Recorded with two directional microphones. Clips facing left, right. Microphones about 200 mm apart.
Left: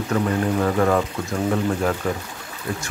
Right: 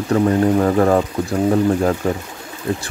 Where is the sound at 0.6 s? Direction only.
35° right (ahead or behind).